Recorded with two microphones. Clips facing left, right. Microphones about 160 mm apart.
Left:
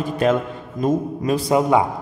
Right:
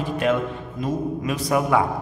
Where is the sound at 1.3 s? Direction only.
25° left (ahead or behind).